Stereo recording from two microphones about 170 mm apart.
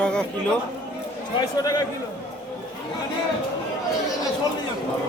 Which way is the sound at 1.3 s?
20° left (ahead or behind).